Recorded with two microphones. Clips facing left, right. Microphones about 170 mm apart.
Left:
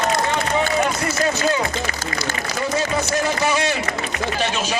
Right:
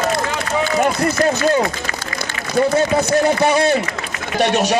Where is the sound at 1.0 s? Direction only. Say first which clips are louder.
Right 4 dB; 50° right (ahead or behind).